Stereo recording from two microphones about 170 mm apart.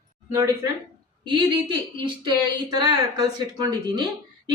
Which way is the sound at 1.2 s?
30° right (ahead or behind).